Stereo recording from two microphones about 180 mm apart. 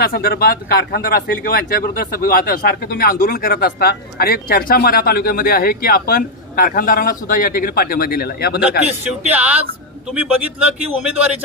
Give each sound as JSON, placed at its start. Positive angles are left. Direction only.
{"t": 0.0, "sound": "speech", "side_deg": 55}
{"t": 9.3, "sound": "a man's voice", "side_deg": -5}